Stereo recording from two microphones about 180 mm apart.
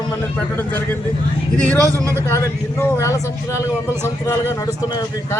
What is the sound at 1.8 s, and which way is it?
Speech, 15° right (ahead or behind).